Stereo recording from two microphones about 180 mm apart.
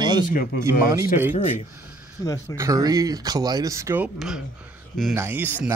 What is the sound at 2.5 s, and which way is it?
Speech, 20° right (ahead or behind).